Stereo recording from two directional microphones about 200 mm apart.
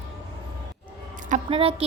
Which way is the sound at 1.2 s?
35° right (ahead or behind).